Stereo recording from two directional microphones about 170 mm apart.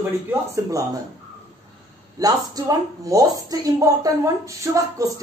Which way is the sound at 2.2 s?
20° right (ahead or behind).